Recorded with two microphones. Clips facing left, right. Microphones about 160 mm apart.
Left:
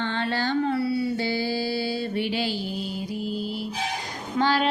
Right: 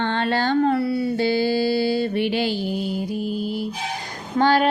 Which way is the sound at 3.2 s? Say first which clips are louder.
Right 4 dB; 55° right (ahead or behind).